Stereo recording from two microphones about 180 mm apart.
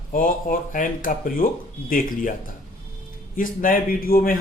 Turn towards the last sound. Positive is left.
turn(degrees=55)  # may be behind; listen again after turning